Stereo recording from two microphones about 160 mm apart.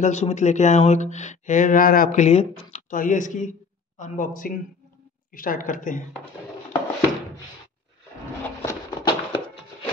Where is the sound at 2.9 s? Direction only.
55° left (ahead or behind).